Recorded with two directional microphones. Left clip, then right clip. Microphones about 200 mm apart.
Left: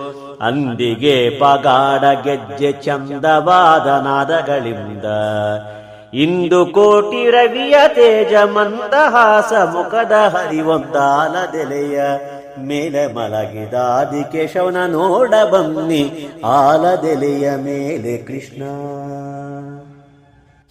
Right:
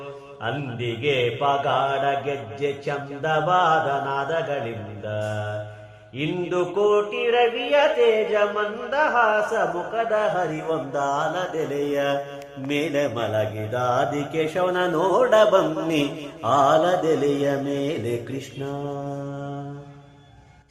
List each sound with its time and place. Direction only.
0.4 s mantra: 70° left (ahead or behind); by 11.4 s 45° left (ahead or behind)
11.5 s speech: 30° left (ahead or behind)